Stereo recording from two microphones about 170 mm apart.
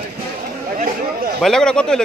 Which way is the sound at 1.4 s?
5° left (ahead or behind).